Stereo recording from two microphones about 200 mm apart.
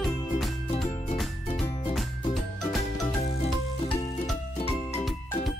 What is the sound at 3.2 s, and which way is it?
Music, 30° left (ahead or behind).